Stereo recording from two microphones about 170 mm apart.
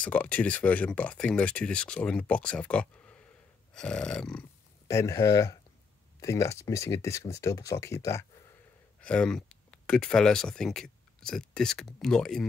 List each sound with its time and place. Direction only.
0.0 s speech: 10° left (ahead or behind)
3.7 s a sound: 5° left (ahead or behind)
4.8 s speech: 20° left (ahead or behind)
9.0 s speech: 5° left (ahead or behind)